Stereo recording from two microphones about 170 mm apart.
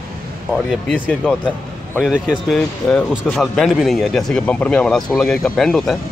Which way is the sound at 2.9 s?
5° left (ahead or behind).